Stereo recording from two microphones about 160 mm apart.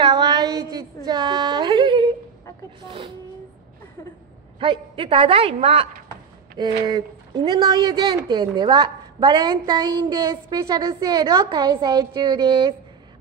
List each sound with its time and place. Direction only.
0.0 s a sound: 25° right (ahead or behind)
4.6 s a woman's voice: 35° right (ahead or behind)
6.8 s a woman's voice: 25° right (ahead or behind)